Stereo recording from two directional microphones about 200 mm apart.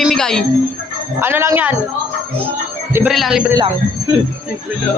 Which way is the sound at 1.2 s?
10° right (ahead or behind).